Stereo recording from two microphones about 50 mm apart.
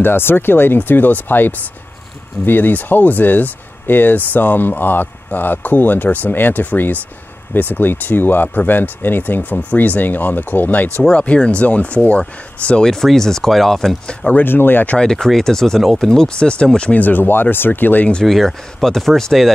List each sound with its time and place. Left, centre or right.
0.0 s speech: left
11.0 s speech: left
12.8 s speech: centre
14.3 s speech: left
15.0 s speech: centre
15.8 s speech: centre
16.1 s speech: centre
16.9 s speech: left
18.2 s speech: centre